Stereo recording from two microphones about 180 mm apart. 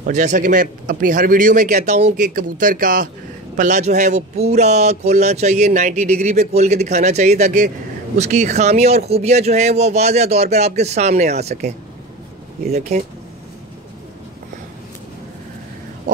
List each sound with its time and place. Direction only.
0.0 s a man's voice: 40° right (ahead or behind)